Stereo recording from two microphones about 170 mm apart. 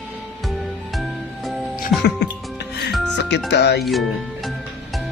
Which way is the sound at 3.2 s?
90° left.